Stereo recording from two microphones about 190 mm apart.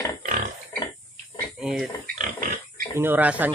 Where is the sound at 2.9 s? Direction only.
10° right (ahead or behind).